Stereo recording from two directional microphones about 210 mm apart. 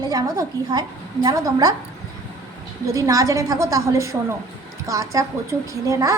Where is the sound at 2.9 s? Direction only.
15° right (ahead or behind).